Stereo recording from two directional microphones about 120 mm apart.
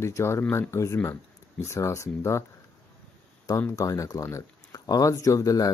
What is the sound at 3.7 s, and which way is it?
Speech, 30° left (ahead or behind).